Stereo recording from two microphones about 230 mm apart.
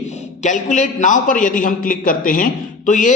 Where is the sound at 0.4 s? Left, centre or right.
Left.